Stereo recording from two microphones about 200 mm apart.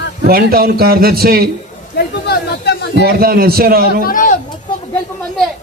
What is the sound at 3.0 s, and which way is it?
A man's voice, 50° right (ahead or behind).